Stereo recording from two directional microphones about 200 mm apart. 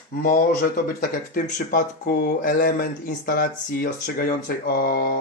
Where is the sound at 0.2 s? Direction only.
45° left (ahead or behind).